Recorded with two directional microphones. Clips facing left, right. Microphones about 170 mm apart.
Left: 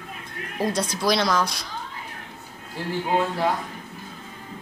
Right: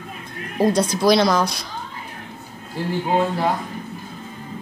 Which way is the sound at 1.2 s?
35° right (ahead or behind).